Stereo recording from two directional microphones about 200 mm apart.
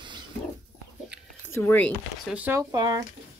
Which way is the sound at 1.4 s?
10° left (ahead or behind).